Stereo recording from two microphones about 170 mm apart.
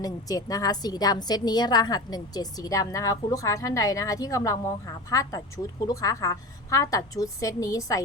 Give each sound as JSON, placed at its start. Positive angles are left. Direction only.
{"t": 0.0, "sound": "a woman's voice", "side_deg": 20}